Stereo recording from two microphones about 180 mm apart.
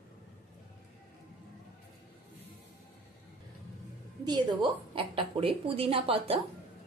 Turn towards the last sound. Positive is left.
turn(degrees=-30)  # may be behind; listen again after turning